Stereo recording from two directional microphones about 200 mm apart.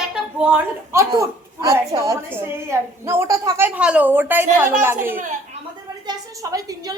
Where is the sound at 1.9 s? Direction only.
15° right (ahead or behind).